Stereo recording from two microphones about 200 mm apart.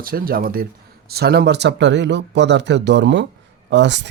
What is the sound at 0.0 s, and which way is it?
Speech, 45° right (ahead or behind).